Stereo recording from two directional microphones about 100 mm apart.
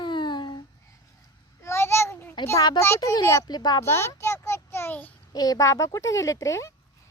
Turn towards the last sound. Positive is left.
turn(degrees=30)  # may be behind; listen again after turning